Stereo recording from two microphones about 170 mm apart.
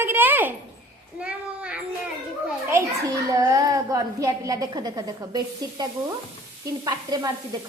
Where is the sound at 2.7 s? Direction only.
20° right (ahead or behind).